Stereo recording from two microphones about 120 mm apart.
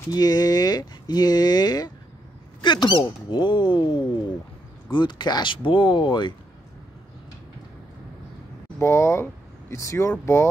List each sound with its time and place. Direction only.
0.1 s speech: 35° left (ahead or behind)
8.7 s speech: 20° left (ahead or behind)